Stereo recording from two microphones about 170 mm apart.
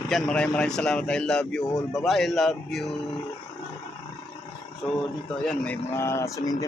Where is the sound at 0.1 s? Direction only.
5° left (ahead or behind).